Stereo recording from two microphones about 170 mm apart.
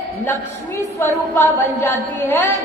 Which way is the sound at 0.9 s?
15° left (ahead or behind).